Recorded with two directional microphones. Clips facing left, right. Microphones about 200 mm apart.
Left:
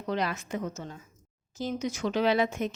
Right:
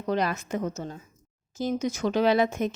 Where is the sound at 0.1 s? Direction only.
45° right (ahead or behind).